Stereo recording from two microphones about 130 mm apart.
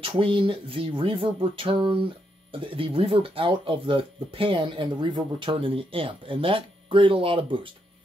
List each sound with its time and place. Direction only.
0.0 s speech: 45° right (ahead or behind)